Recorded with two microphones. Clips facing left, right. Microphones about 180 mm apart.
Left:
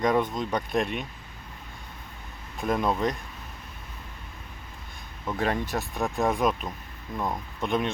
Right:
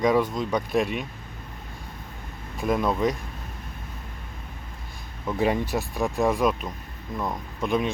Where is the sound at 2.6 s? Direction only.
Centre (ahead or behind).